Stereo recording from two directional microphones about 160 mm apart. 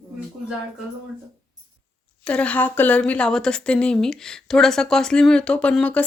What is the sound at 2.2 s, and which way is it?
Speech, 10° left (ahead or behind).